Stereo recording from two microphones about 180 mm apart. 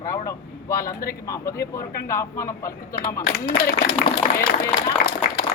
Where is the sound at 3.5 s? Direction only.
60° left (ahead or behind).